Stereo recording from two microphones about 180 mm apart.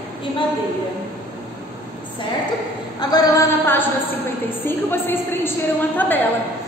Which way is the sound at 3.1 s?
15° left (ahead or behind).